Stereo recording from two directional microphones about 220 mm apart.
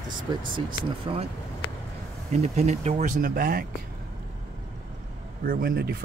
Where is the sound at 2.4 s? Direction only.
30° right (ahead or behind).